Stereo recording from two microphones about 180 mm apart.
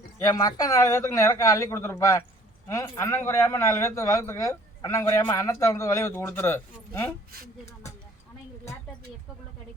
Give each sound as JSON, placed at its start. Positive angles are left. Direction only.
{"t": 0.2, "sound": "a man's voice", "side_deg": 15}